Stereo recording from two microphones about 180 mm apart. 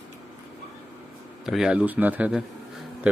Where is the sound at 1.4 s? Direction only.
5° right (ahead or behind).